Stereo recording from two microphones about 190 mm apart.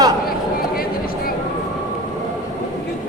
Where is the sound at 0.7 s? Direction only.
50° left (ahead or behind).